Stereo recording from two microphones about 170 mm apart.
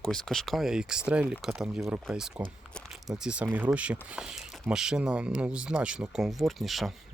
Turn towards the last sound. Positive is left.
turn(degrees=0)  # may be behind; listen again after turning